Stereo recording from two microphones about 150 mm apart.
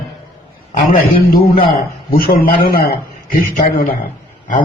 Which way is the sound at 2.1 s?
75° left (ahead or behind).